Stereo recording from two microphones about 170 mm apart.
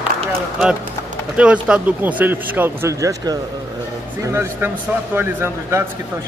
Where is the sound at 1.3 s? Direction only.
5° right (ahead or behind).